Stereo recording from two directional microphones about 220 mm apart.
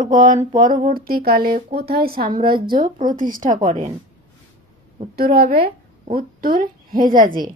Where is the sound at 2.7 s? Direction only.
40° right (ahead or behind).